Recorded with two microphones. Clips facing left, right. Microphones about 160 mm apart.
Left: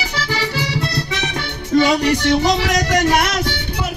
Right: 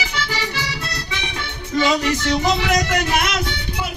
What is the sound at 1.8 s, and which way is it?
Child singing, 35° left (ahead or behind).